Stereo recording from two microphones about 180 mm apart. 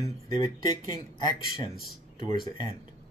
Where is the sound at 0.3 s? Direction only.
20° left (ahead or behind).